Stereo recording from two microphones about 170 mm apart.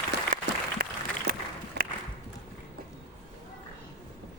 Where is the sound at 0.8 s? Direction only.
60° right (ahead or behind).